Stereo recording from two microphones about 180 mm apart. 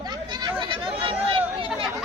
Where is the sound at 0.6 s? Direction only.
30° right (ahead or behind).